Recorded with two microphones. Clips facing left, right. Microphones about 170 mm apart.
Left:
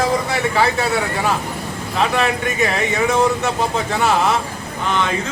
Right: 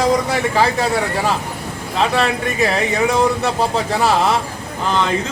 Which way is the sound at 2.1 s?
35° right (ahead or behind).